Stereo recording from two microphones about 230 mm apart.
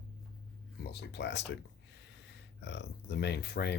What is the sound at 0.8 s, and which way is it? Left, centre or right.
Speech, left.